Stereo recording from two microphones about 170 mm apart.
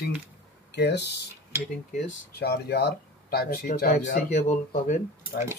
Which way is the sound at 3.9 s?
45° left (ahead or behind).